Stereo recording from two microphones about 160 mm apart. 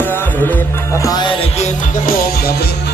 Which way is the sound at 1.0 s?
25° left (ahead or behind).